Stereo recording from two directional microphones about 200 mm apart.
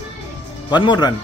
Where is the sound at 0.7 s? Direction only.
20° left (ahead or behind).